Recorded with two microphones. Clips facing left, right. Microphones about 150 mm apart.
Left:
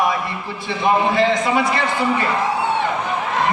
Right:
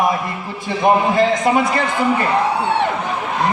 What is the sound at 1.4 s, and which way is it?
Speech, 45° right (ahead or behind).